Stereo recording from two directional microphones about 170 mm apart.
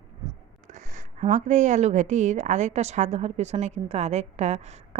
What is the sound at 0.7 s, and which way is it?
Speech, 45° right (ahead or behind).